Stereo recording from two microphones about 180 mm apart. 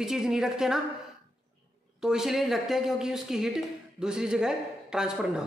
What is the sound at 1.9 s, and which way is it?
Speech, 5° right (ahead or behind).